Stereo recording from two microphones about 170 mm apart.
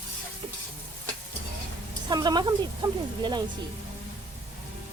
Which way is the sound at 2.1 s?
25° right (ahead or behind).